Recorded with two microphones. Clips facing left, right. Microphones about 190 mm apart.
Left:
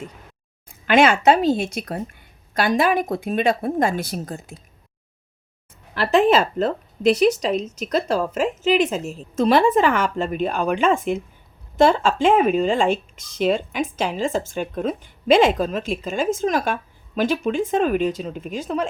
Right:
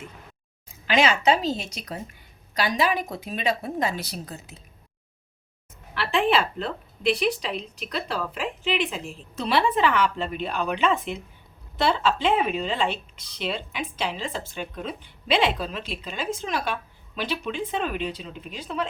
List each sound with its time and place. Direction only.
0.9 s a woman's voice: 55° left (ahead or behind)
5.9 s a woman's voice: 40° left (ahead or behind)